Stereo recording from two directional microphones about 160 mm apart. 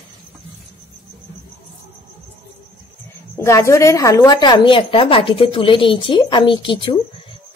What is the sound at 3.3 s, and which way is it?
A woman's voice, 20° left (ahead or behind).